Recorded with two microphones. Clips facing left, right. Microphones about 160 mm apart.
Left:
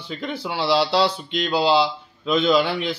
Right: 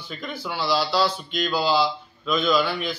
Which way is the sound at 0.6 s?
70° left (ahead or behind).